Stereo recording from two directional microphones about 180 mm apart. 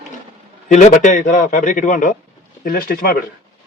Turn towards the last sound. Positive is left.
turn(degrees=55)  # may be behind; listen again after turning